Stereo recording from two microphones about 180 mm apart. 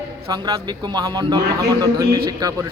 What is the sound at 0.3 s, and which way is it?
A man's voice, 20° right (ahead or behind).